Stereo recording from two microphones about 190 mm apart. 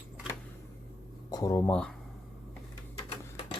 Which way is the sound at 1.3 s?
20° left (ahead or behind).